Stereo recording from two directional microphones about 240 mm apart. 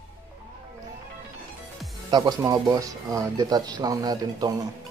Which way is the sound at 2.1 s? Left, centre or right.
Centre.